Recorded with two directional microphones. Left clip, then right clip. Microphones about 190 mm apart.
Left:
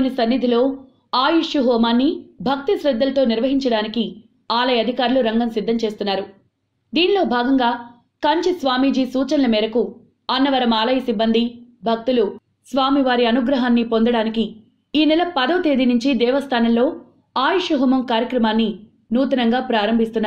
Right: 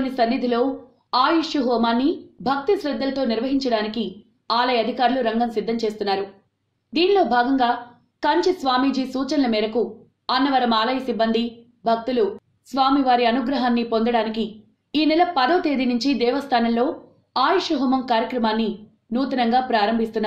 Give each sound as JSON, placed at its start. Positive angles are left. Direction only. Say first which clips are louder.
{"t": 0.0, "sound": "a woman's voice", "louder": "left 2 dB", "side_deg": 25}